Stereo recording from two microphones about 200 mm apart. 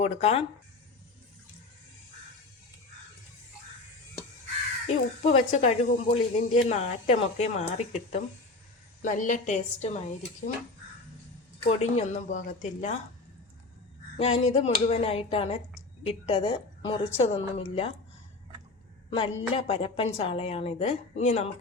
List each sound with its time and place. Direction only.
0.0 s speech: 30° left (ahead or behind)
5.2 s speech: 35° left (ahead or behind)
11.8 s speech: 35° left (ahead or behind)
14.2 s a woman's voice: 30° left (ahead or behind)
19.1 s a woman's voice: 30° left (ahead or behind)